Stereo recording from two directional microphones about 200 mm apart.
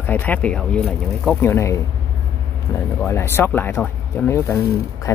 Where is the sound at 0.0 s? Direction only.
10° left (ahead or behind).